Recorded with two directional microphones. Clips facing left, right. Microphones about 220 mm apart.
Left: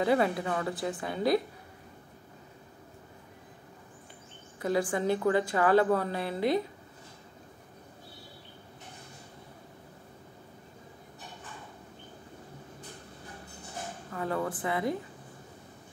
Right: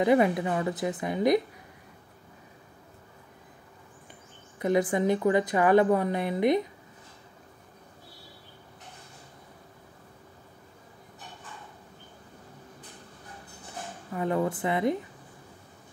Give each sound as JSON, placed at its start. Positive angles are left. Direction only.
{"t": 0.0, "sound": "a woman's voice", "side_deg": -15}
{"t": 4.6, "sound": "a woman's voice", "side_deg": -20}
{"t": 14.1, "sound": "a woman's voice", "side_deg": -20}